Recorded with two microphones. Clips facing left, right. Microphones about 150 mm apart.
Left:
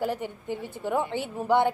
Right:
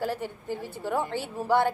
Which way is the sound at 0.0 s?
15° left (ahead or behind).